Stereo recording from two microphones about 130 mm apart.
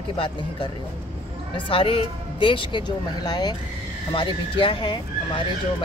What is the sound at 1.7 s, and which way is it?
Speech, 45° left (ahead or behind).